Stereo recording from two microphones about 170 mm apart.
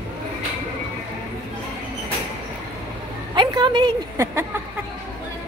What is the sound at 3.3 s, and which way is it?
Speech, 30° right (ahead or behind).